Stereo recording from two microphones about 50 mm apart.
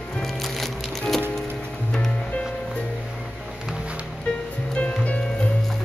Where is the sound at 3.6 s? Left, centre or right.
Right.